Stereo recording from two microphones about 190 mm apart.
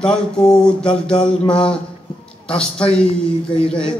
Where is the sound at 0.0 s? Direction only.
5° left (ahead or behind).